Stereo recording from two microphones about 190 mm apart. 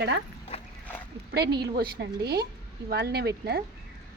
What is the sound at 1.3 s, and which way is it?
A woman's voice, 60° right (ahead or behind).